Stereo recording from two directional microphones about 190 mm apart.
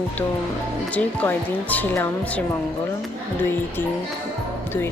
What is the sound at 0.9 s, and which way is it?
Music, 10° left (ahead or behind).